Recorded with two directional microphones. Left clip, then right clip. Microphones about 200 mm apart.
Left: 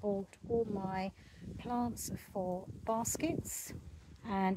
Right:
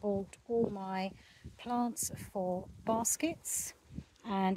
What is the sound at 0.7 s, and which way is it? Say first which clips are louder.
Speech: right 1 dB; 15° right (ahead or behind).